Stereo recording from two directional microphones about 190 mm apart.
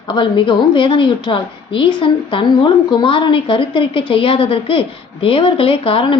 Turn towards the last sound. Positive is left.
turn(degrees=30)  # may be behind; listen again after turning